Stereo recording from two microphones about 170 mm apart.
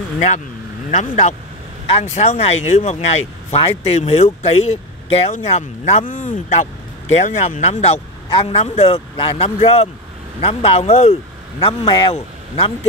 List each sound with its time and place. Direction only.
0.9 s a man's voice: 40° left (ahead or behind)
11.6 s a man's voice: 25° left (ahead or behind)